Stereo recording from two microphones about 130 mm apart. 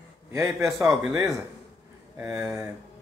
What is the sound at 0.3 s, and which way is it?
Speech, 25° right (ahead or behind).